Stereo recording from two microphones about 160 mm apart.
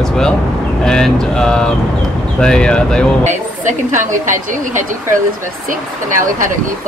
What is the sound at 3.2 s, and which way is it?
A woman's voice, 50° right (ahead or behind).